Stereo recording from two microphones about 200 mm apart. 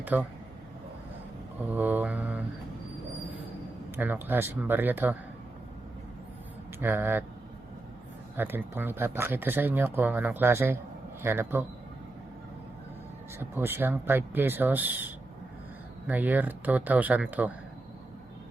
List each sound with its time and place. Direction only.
0.0 s speech: 10° right (ahead or behind)
1.7 s speech: 10° right (ahead or behind)
3.9 s speech: 10° right (ahead or behind)
6.7 s speech: 10° right (ahead or behind)
8.4 s speech: 10° right (ahead or behind)
13.4 s speech: 10° right (ahead or behind)
16.0 s speech: 10° right (ahead or behind)